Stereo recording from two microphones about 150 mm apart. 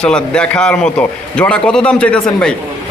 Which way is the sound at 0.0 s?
5° left (ahead or behind).